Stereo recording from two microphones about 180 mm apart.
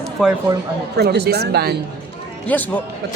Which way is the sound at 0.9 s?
65° right (ahead or behind).